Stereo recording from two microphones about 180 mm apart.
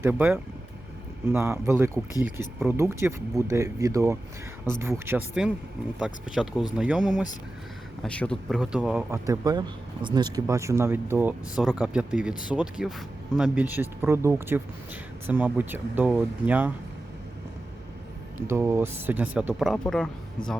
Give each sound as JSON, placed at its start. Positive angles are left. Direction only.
{"t": 0.0, "sound": "speech", "side_deg": -10}
{"t": 8.0, "sound": "speech", "side_deg": 5}
{"t": 9.0, "sound": "speech", "side_deg": -15}
{"t": 18.4, "sound": "speech", "side_deg": -15}